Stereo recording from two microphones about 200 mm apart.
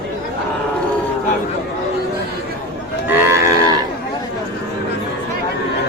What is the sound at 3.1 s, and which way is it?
Livestock, 15° right (ahead or behind).